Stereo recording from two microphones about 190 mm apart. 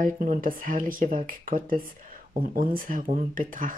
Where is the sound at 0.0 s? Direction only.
45° right (ahead or behind).